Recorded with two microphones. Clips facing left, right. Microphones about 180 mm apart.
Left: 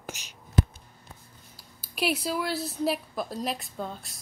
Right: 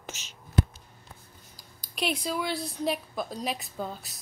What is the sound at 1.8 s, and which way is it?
A woman's voice, 5° left (ahead or behind).